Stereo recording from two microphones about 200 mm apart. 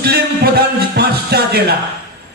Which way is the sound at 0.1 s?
50° right (ahead or behind).